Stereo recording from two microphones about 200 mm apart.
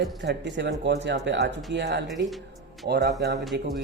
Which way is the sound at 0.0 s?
60° right (ahead or behind).